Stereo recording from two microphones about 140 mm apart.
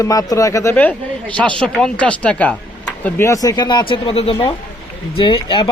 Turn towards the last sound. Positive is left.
turn(degrees=35)  # may be behind; listen again after turning